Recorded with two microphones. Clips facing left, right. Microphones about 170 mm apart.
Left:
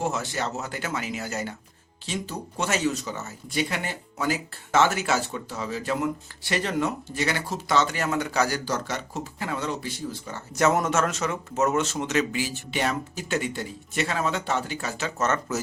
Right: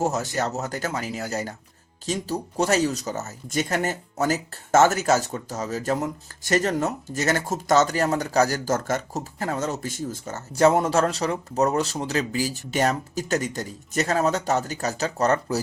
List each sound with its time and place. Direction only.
0.0 s speech: 40° right (ahead or behind)
10.5 s speech: 30° right (ahead or behind)